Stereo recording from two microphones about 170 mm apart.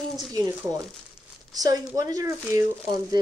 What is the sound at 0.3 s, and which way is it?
Speech, 20° right (ahead or behind).